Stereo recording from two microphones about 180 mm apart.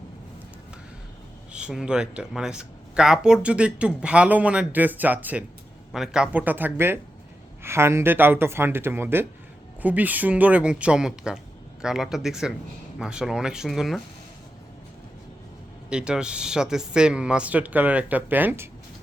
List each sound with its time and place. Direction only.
1.5 s speech: 5° right (ahead or behind)
15.9 s speech: 5° right (ahead or behind)